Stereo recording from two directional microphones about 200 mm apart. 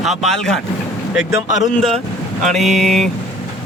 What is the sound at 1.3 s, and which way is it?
Speech, 20° right (ahead or behind).